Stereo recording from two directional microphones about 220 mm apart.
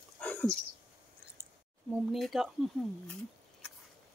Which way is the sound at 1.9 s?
Centre (ahead or behind).